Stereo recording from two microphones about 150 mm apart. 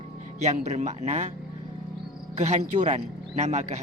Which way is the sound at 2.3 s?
50° right (ahead or behind).